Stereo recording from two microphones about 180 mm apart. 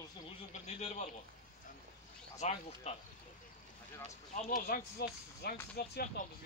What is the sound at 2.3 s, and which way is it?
Speech, 40° left (ahead or behind).